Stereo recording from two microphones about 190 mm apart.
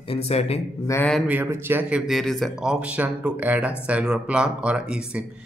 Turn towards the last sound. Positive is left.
turn(degrees=-5)  # may be behind; listen again after turning